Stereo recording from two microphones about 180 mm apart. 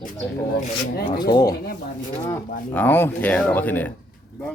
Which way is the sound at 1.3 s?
20° left (ahead or behind).